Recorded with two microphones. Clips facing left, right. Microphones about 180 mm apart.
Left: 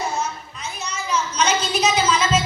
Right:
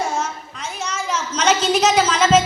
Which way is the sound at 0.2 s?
90° right.